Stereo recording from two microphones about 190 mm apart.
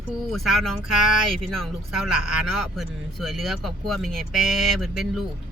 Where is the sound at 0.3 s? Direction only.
Centre (ahead or behind).